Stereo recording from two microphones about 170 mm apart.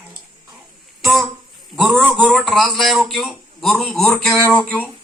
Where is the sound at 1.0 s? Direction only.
Centre (ahead or behind).